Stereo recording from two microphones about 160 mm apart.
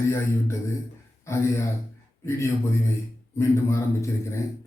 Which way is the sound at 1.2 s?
15° left (ahead or behind).